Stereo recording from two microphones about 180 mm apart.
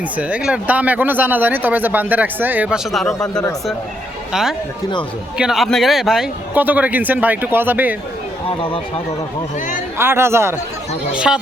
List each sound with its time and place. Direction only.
0.2 s speech: 10° right (ahead or behind)
8.4 s speech: 30° left (ahead or behind)
10.0 s speech: 15° right (ahead or behind)